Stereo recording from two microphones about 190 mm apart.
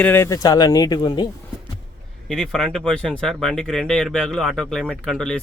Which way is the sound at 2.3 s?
5° left (ahead or behind).